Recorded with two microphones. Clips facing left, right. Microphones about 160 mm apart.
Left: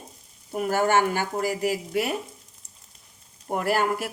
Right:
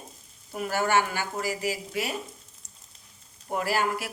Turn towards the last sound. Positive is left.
turn(degrees=50)  # may be behind; listen again after turning